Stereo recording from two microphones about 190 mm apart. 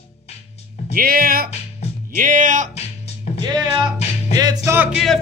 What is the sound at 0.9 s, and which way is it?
Speech, 50° right (ahead or behind).